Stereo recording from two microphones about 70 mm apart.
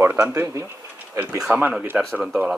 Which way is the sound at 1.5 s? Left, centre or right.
Right.